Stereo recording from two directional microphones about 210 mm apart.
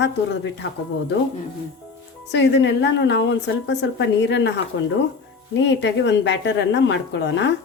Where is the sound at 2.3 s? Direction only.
55° left (ahead or behind).